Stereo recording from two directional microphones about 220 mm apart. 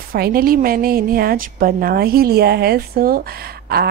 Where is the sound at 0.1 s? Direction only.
45° right (ahead or behind).